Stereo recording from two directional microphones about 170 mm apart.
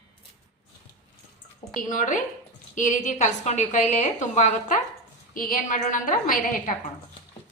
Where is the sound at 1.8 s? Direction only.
50° left (ahead or behind).